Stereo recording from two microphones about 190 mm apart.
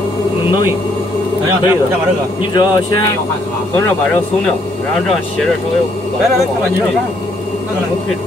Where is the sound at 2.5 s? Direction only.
25° left (ahead or behind).